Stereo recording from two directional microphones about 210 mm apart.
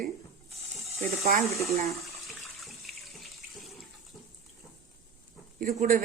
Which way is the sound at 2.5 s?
Centre (ahead or behind).